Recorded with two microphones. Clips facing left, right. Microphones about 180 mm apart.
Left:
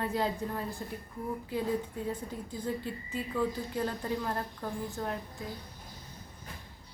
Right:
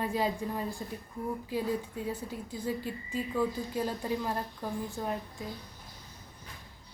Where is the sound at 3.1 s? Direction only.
10° right (ahead or behind).